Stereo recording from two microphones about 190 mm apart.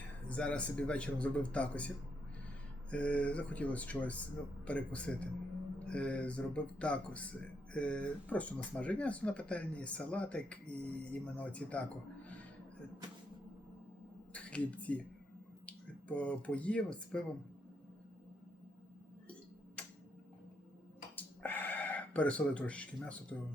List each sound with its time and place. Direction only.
0.3 s speech: 5° left (ahead or behind)
2.9 s speech: 5° left (ahead or behind)
14.3 s speech: 5° left (ahead or behind)
21.2 s a sound: 10° left (ahead or behind)